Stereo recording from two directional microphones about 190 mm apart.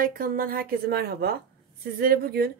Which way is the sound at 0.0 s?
45° right (ahead or behind).